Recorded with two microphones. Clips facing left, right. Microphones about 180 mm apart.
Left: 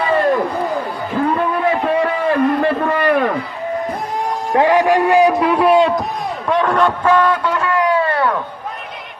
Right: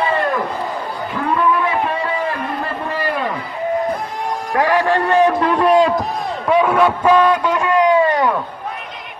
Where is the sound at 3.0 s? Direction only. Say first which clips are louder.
Left 6 dB; 60° left (ahead or behind).